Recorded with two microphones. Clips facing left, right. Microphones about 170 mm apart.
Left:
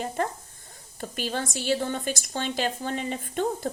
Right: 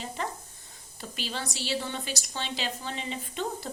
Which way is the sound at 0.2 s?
50° left (ahead or behind).